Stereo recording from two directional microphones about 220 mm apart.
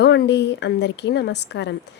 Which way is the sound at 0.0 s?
50° left (ahead or behind).